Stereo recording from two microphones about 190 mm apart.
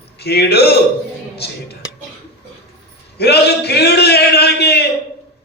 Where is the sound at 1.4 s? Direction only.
60° left (ahead or behind).